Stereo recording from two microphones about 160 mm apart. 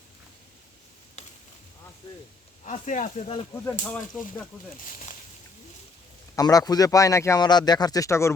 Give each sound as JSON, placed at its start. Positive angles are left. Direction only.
{"t": 2.6, "sound": "speech", "side_deg": 50}
{"t": 3.8, "sound": "speech", "side_deg": 5}
{"t": 6.3, "sound": "a man's voice", "side_deg": 25}